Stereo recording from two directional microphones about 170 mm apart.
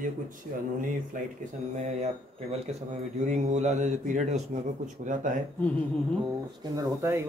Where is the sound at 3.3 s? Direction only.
40° right (ahead or behind).